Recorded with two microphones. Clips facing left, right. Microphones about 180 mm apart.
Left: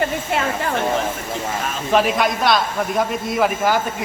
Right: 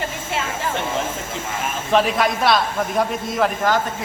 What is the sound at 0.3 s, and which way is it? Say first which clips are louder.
Speech: left 2 dB; 55° left (ahead or behind).